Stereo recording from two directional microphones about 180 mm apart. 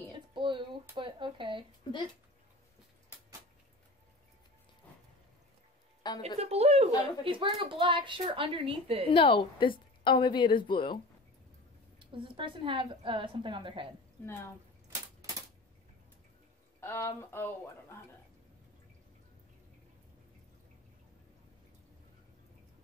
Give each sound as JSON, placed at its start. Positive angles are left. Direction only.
{"t": 0.3, "sound": "a sound", "side_deg": -25}
{"t": 6.2, "sound": "a woman's voice", "side_deg": -35}
{"t": 9.1, "sound": "a woman's voice", "side_deg": 30}
{"t": 12.0, "sound": "a woman's voice", "side_deg": -30}
{"t": 14.2, "sound": "speech", "side_deg": 15}
{"t": 16.8, "sound": "speech", "side_deg": 15}